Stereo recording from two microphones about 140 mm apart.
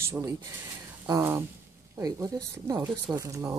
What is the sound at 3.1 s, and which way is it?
Speech, 25° right (ahead or behind).